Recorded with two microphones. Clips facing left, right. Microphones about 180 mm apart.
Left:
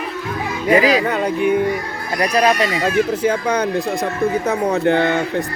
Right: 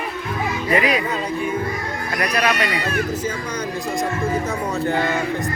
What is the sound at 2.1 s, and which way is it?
Speech, 25° left (ahead or behind).